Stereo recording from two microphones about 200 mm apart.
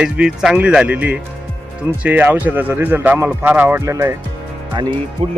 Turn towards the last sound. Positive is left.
turn(degrees=-30)  # may be behind; listen again after turning